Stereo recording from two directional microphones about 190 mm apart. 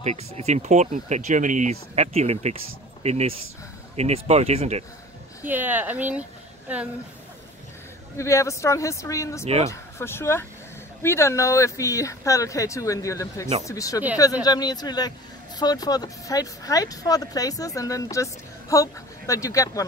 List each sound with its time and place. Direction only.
0.0 s speech: 35° right (ahead or behind)
5.4 s speech: 10° right (ahead or behind)
8.2 s speech: 15° left (ahead or behind)